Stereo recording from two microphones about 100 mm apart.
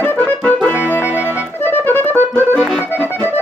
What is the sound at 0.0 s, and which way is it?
Music, 20° left (ahead or behind).